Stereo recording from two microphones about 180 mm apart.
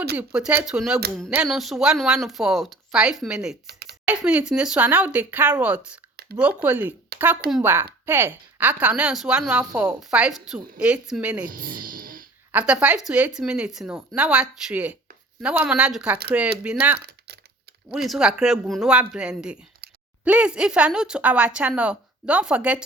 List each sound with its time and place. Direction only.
0.2 s a woman's voice: 5° right (ahead or behind)
3.7 s a sound: 65° right (ahead or behind)
4.0 s speech: 5° right (ahead or behind)
7.1 s a sound: 60° right (ahead or behind)
7.6 s a woman's voice: 10° right (ahead or behind)
11.4 s speech: 50° right (ahead or behind)
12.5 s a woman's voice: 5° right (ahead or behind)
17.1 s typing: 65° right (ahead or behind)
17.9 s a woman's voice: centre (ahead or behind)